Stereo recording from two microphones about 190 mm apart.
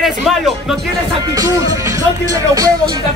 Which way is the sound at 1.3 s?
20° right (ahead or behind).